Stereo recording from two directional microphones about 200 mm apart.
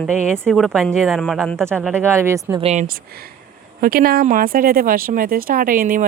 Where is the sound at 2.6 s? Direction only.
30° right (ahead or behind).